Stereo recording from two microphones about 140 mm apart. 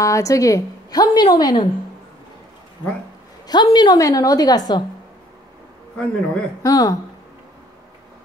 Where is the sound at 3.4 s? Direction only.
30° left (ahead or behind).